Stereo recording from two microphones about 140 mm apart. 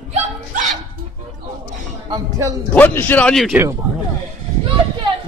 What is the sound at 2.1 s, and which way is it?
Speech, 25° right (ahead or behind).